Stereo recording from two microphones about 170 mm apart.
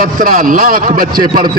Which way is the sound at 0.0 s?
50° right (ahead or behind).